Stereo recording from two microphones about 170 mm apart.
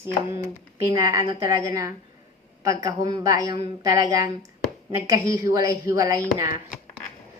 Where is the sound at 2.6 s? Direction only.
25° right (ahead or behind).